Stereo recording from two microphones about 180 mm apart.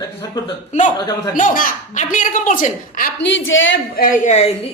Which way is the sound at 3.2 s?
90° left.